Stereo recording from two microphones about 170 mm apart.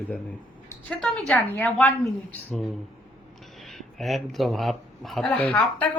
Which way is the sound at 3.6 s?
Centre (ahead or behind).